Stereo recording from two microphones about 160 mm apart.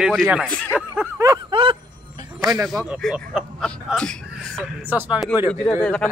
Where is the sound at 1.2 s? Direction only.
20° right (ahead or behind).